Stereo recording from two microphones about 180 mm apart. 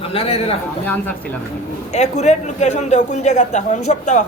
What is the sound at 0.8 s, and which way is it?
Speech, 10° left (ahead or behind).